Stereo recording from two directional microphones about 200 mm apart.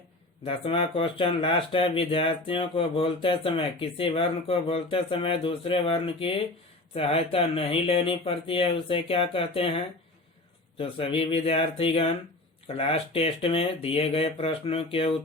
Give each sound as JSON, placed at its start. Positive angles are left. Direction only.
{"t": 0.4, "sound": "speech", "side_deg": 30}
{"t": 10.8, "sound": "speech", "side_deg": 30}